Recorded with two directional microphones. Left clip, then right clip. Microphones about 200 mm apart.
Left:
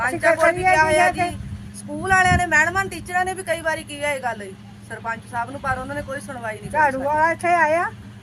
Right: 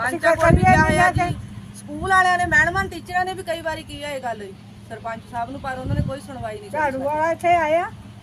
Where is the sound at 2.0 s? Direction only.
15° left (ahead or behind).